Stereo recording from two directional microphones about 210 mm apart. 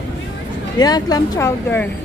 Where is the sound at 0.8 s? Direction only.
20° left (ahead or behind).